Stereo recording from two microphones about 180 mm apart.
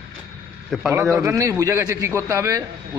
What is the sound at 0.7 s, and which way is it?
Speech, centre (ahead or behind).